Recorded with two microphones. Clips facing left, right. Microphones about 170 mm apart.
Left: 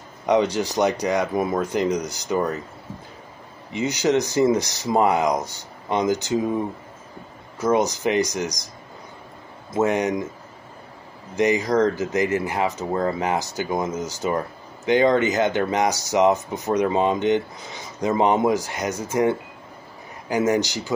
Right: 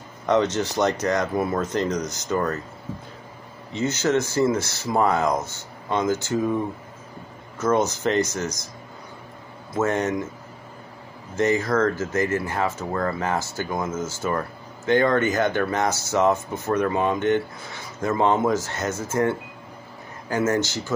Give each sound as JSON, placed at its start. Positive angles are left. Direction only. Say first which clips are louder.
{"t": 0.3, "sound": "speech", "louder": "left 1 dB", "side_deg": 15}
{"t": 3.7, "sound": "speech", "louder": "left 1 dB", "side_deg": 15}
{"t": 7.5, "sound": "speech", "louder": "left 1 dB", "side_deg": 10}
{"t": 9.7, "sound": "speech", "louder": "left 2 dB", "side_deg": 15}
{"t": 11.3, "sound": "speech", "louder": "left 2 dB", "side_deg": 15}